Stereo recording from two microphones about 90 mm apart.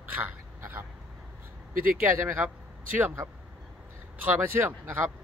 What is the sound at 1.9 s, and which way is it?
Speech, 25° right (ahead or behind).